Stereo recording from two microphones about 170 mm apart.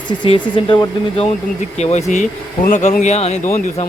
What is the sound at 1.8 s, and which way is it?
Speech, 40° left (ahead or behind).